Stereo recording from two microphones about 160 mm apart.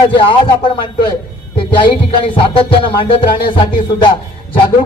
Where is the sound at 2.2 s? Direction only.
30° left (ahead or behind).